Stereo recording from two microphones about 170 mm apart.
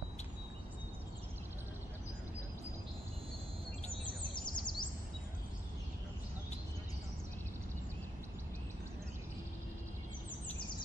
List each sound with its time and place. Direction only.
4.6 s chirp: 25° left (ahead or behind)